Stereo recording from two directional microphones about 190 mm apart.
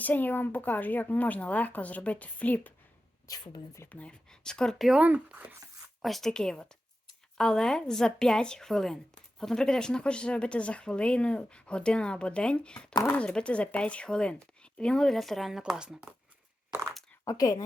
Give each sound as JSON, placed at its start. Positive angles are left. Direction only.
{"t": 0.0, "sound": "speech", "side_deg": 10}
{"t": 3.2, "sound": "speech", "side_deg": 20}
{"t": 3.8, "sound": "speech", "side_deg": 5}
{"t": 12.9, "sound": "speech", "side_deg": 20}
{"t": 13.1, "sound": "speech", "side_deg": 5}
{"t": 17.2, "sound": "speech", "side_deg": 20}